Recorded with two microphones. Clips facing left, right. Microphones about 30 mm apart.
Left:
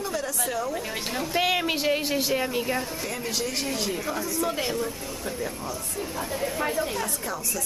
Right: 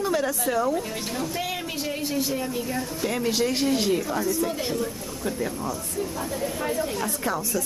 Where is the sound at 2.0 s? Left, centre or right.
Left.